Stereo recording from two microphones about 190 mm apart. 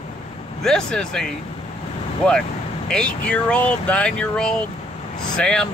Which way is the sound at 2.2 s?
5° left (ahead or behind).